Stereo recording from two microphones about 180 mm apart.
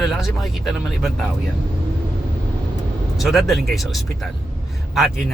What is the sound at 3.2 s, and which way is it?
Speech, centre (ahead or behind).